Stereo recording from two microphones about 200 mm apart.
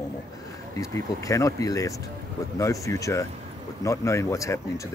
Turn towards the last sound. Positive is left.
turn(degrees=15)  # may be behind; listen again after turning